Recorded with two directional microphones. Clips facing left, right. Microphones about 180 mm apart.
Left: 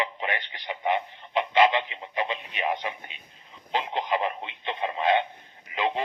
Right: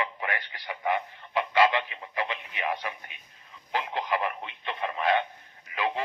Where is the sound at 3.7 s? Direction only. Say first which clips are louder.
Left 2 dB; 20° left (ahead or behind).